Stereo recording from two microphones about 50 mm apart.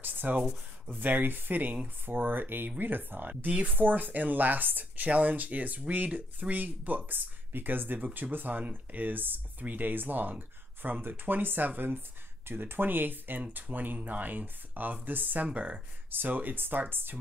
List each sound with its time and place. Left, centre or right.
0.0 s a sound: right
0.8 s speech: right
15.4 s speech: right
16.1 s speech: right